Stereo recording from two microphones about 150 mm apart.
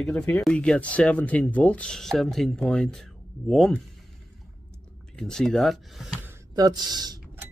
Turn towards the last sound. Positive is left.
turn(degrees=-25)  # may be behind; listen again after turning